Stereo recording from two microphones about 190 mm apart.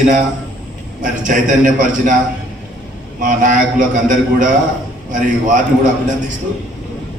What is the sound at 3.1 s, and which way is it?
A man's voice, 45° right (ahead or behind).